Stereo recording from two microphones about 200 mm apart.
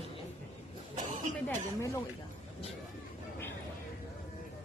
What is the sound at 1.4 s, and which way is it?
Speech, 15° left (ahead or behind).